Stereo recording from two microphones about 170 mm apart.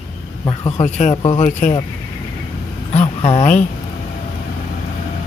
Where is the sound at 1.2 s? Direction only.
30° left (ahead or behind).